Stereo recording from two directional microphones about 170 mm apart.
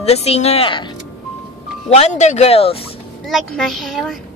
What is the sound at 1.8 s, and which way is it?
Speech, 40° left (ahead or behind).